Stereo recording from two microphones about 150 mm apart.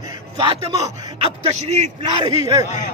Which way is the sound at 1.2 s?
45° right (ahead or behind).